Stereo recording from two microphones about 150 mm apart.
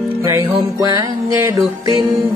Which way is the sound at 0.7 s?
25° right (ahead or behind).